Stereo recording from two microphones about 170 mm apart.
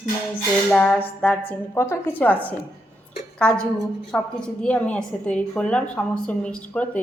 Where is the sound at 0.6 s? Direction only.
5° left (ahead or behind).